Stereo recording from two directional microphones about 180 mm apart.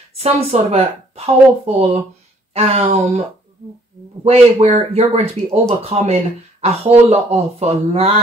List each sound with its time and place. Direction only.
0.1 s speech: 35° right (ahead or behind)
4.2 s speech: 35° right (ahead or behind)